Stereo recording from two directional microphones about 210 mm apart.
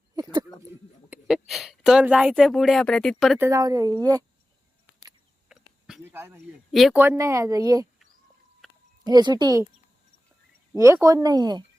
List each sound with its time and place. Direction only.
0.2 s a sound: 20° right (ahead or behind)
1.1 s a woman's voice: centre (ahead or behind)
5.5 s a sound: 5° right (ahead or behind)
6.7 s speech: centre (ahead or behind)
7.0 s a woman's voice: 10° right (ahead or behind)
9.0 s speech: 20° right (ahead or behind)
10.8 s a woman's voice: 15° right (ahead or behind)